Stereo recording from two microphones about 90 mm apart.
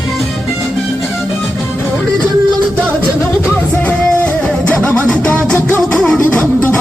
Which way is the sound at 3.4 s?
15° left (ahead or behind).